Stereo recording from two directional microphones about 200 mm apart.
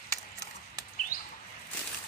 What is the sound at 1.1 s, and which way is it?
Bird flight, 45° left (ahead or behind).